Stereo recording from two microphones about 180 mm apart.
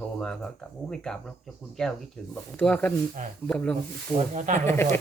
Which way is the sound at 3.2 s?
45° right (ahead or behind).